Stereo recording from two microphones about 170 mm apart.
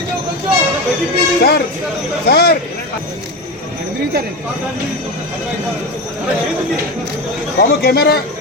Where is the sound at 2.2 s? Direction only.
65° left (ahead or behind).